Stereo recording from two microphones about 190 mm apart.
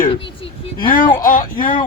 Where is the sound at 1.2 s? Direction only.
45° left (ahead or behind).